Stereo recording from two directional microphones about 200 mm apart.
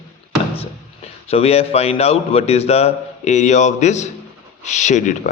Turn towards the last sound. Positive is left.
turn(degrees=35)  # may be behind; listen again after turning